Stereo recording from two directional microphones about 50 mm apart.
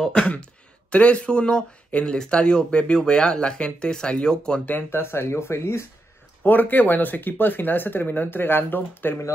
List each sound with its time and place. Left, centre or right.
0.0 s speech: centre
4.9 s speech: left
6.4 s speech: left